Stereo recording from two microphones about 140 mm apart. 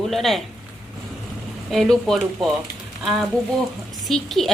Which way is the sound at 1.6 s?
Centre (ahead or behind).